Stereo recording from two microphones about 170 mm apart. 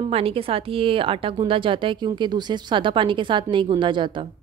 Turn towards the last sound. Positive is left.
turn(degrees=-30)  # may be behind; listen again after turning